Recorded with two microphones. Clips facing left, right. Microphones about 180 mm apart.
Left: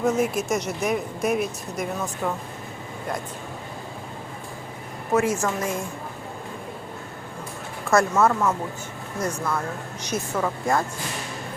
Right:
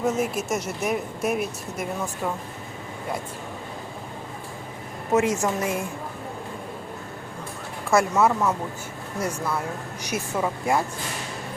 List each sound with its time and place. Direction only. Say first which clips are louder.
0.0 s speech: left 2 dB; 5° right (ahead or behind)
5.1 s a woman's voice: right 1 dB; 20° right (ahead or behind)
7.9 s a woman's voice: left 1 dB; 10° right (ahead or behind)
10.0 s a woman's voice: left 1 dB; 10° right (ahead or behind)